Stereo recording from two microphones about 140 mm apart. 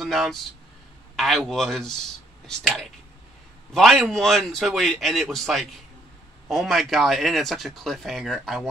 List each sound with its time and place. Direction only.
0.0 s speech: centre (ahead or behind)